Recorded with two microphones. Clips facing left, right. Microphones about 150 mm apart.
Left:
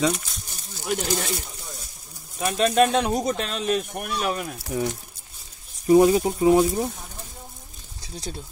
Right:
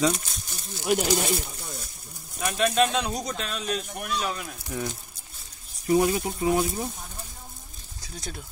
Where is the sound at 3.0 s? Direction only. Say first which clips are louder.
Left 6 dB; 50° left (ahead or behind).